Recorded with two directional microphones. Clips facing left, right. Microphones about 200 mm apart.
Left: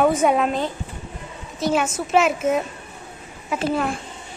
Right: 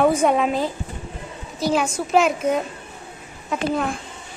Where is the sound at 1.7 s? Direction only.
5° left (ahead or behind).